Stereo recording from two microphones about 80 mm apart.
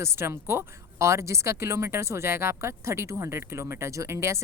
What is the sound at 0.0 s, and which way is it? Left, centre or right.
Speech, right.